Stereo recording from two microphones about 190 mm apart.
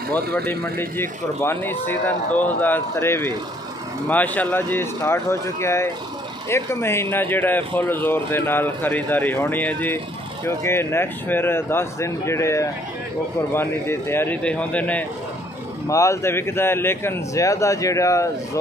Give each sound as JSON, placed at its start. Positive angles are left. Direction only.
{"t": 0.5, "sound": "speech", "side_deg": 10}